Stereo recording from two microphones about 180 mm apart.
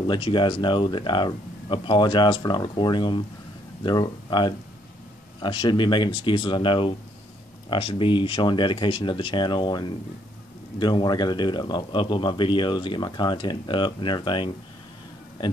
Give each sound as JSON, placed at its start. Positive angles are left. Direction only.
{"t": 0.0, "sound": "speech", "side_deg": 25}